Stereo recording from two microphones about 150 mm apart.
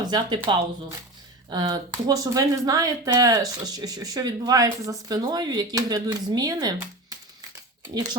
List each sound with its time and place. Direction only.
0.0 s speech: 30° right (ahead or behind)